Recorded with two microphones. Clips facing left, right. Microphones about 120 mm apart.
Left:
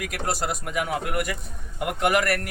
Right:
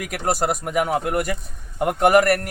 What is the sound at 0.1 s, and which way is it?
Speech, 45° right (ahead or behind).